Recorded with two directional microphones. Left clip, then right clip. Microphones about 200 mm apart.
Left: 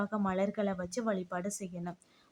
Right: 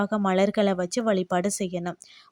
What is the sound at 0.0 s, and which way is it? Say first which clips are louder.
Speech: right 10 dB; 35° right (ahead or behind).